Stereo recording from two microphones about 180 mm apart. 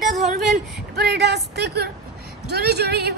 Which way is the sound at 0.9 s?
65° right (ahead or behind).